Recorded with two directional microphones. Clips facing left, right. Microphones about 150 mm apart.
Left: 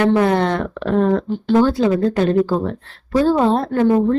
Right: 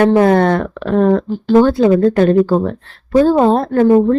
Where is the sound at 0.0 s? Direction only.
45° right (ahead or behind).